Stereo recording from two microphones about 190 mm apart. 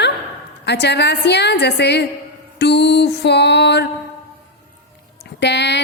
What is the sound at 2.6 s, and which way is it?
Mantra, 65° left (ahead or behind).